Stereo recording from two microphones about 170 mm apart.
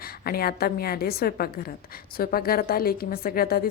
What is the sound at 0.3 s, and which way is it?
A woman's voice, 60° left (ahead or behind).